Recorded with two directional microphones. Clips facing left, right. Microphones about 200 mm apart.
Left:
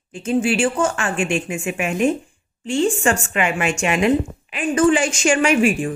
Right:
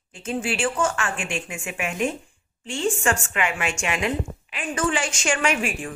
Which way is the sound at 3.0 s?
25° left (ahead or behind).